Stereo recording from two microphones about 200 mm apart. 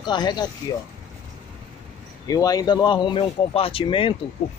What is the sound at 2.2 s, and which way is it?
Speech, 20° left (ahead or behind).